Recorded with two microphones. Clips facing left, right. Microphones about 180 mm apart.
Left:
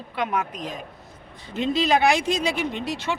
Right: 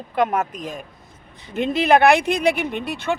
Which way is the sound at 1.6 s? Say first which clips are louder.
Right 4 dB; 55° right (ahead or behind).